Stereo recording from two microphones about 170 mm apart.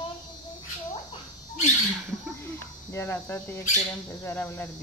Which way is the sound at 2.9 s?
15° left (ahead or behind).